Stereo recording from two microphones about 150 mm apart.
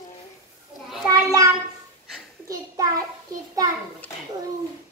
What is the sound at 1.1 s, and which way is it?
Speech, 20° right (ahead or behind).